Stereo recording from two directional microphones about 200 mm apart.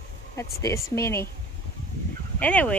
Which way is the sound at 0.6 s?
15° left (ahead or behind).